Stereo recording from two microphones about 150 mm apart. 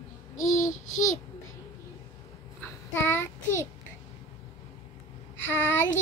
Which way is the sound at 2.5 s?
15° left (ahead or behind).